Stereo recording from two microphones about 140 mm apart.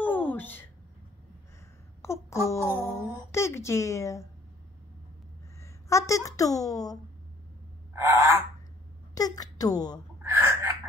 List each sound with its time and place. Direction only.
0.0 s a sound: 10° left (ahead or behind)
2.0 s a sound: 20° left (ahead or behind)
2.4 s speech: 20° left (ahead or behind)
5.6 s a woman's voice: 20° left (ahead or behind)
7.9 s frog: 20° right (ahead or behind)
9.1 s a woman's voice: 25° left (ahead or behind)
10.2 s gasp: 20° right (ahead or behind)